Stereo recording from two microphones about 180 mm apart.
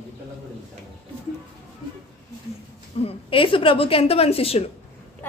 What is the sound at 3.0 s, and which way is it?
A woman's voice, 30° left (ahead or behind).